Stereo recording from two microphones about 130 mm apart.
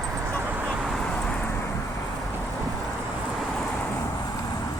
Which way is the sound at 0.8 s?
5° left (ahead or behind).